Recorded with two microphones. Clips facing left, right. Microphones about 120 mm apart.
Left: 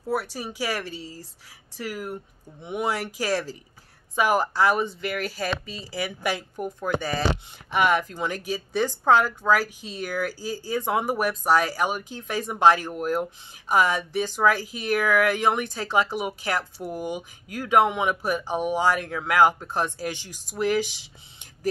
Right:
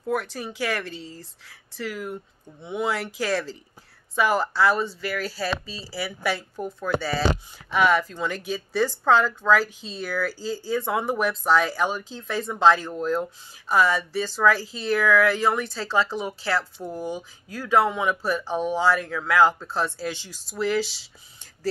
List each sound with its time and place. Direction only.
0.0 s speech: 5° left (ahead or behind)
5.7 s speech: 50° left (ahead or behind)
6.0 s speech: 15° left (ahead or behind)